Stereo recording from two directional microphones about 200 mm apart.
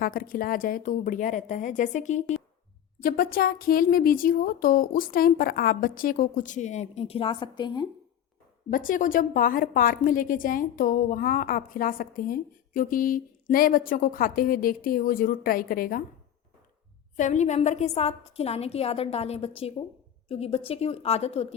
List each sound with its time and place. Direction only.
0.0 s a woman's voice: 45° left (ahead or behind); by 7.9 s 20° left (ahead or behind)
8.7 s a woman's voice: 45° left (ahead or behind)
17.2 s a woman's voice: 35° left (ahead or behind)